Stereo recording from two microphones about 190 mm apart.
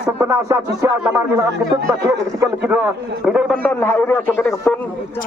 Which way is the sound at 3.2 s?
5° right (ahead or behind).